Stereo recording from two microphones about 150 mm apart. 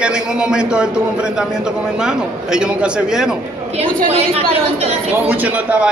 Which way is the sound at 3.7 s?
40° right (ahead or behind).